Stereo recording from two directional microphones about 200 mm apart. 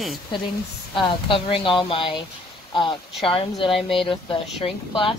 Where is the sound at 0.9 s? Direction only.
25° left (ahead or behind).